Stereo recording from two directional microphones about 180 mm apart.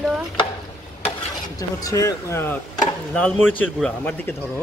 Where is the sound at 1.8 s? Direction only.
20° left (ahead or behind).